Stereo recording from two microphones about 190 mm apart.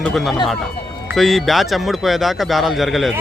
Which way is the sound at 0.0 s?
Centre (ahead or behind).